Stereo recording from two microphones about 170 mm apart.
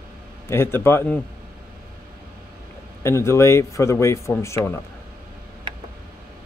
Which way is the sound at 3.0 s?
15° left (ahead or behind).